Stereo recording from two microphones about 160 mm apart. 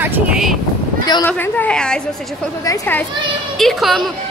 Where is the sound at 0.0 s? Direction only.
5° right (ahead or behind).